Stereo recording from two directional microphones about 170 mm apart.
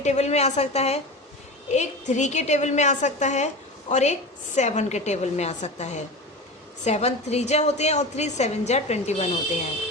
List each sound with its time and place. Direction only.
0.0 s a woman's voice: 40° left (ahead or behind)